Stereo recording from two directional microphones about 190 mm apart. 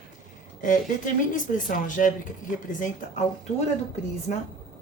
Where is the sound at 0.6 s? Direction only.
45° left (ahead or behind).